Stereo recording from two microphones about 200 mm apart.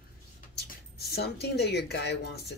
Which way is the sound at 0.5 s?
55° left (ahead or behind).